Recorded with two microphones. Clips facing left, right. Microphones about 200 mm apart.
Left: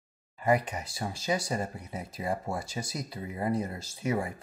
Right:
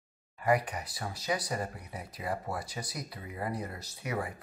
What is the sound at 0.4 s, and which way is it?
Speech, 25° left (ahead or behind).